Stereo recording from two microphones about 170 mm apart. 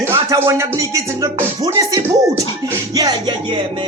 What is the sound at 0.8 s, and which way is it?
Speech, 20° right (ahead or behind).